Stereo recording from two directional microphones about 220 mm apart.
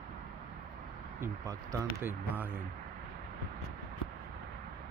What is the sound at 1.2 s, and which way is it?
Speech, 15° right (ahead or behind).